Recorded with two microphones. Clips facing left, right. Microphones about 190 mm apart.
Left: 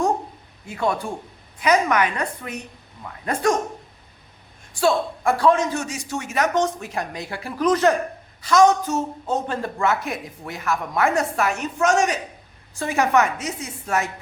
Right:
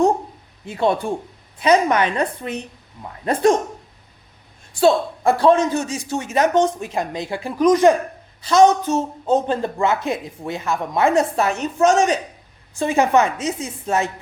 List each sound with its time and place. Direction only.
0.7 s a man's voice: 25° right (ahead or behind)
4.8 s a man's voice: 25° right (ahead or behind)
8.4 s a man's voice: 30° right (ahead or behind)